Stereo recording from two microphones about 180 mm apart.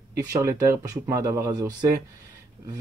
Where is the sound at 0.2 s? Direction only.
20° right (ahead or behind).